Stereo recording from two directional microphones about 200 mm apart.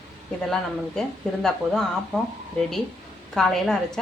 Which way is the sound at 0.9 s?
Centre (ahead or behind).